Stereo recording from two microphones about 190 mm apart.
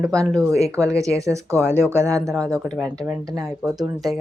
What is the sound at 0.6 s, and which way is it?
Speech, 15° right (ahead or behind).